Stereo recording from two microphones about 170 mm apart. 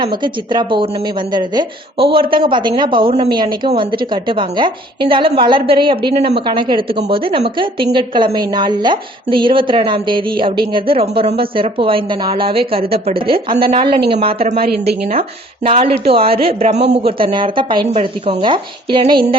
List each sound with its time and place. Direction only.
0.0 s a woman's voice: 30° right (ahead or behind)